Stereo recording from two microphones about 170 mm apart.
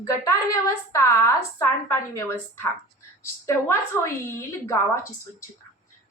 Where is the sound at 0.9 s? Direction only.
20° left (ahead or behind).